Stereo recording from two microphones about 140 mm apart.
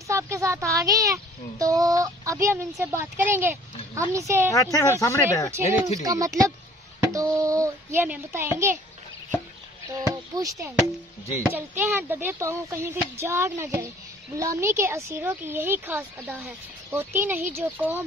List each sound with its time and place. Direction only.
0.1 s speech: 20° right (ahead or behind)
4.5 s speech: 25° left (ahead or behind)
6.0 s a child's voice: 25° right (ahead or behind)
9.9 s speech: 25° right (ahead or behind)